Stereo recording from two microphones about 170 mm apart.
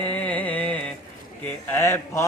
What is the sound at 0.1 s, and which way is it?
Music, 10° left (ahead or behind).